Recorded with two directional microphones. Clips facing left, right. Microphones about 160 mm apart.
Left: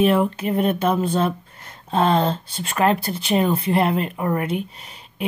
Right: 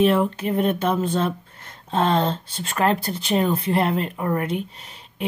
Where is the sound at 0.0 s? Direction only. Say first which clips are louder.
Left 1 dB; 10° left (ahead or behind).